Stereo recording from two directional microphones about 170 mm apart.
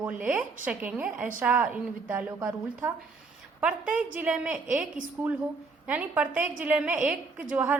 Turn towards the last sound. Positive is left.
turn(degrees=-10)  # may be behind; listen again after turning